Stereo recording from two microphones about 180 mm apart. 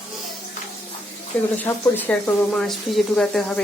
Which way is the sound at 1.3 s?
10° left (ahead or behind).